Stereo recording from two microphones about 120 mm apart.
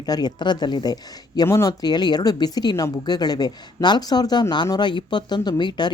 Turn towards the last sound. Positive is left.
turn(degrees=40)  # may be behind; listen again after turning